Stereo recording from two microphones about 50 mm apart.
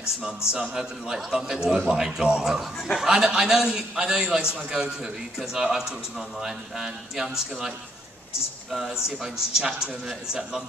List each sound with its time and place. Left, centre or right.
0.5 s a man's voice: centre
8.7 s a man's voice: centre